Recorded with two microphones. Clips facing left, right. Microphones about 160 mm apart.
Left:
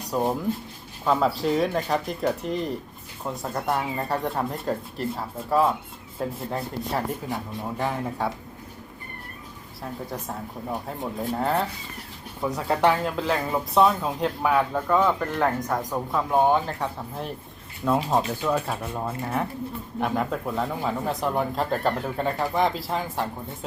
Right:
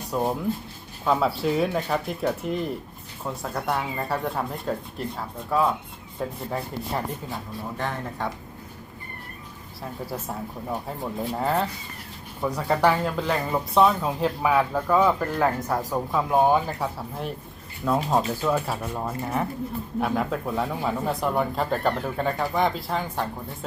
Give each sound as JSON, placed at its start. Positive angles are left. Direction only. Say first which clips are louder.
{"t": 0.1, "sound": "speech", "louder": "left 1 dB", "side_deg": 0}
{"t": 9.8, "sound": "speech", "louder": "even", "side_deg": -5}